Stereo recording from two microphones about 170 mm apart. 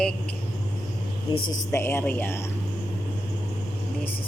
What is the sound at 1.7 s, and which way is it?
Speech, 15° left (ahead or behind).